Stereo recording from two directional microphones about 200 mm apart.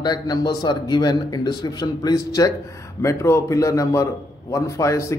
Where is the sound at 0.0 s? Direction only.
20° left (ahead or behind).